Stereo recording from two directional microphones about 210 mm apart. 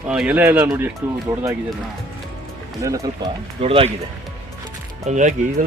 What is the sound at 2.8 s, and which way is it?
Speech, 15° right (ahead or behind).